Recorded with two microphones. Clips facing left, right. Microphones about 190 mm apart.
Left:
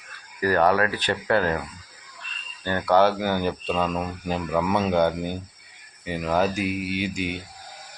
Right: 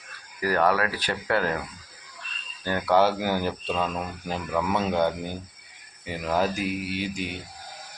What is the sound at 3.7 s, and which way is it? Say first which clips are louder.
Speech: left 3 dB; 10° left (ahead or behind).